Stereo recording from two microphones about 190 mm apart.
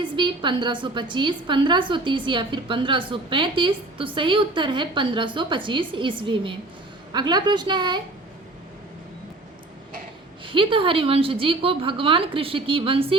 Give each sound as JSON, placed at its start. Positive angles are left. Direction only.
{"t": 0.0, "sound": "a woman's voice", "side_deg": -25}
{"t": 10.4, "sound": "a woman's voice", "side_deg": -25}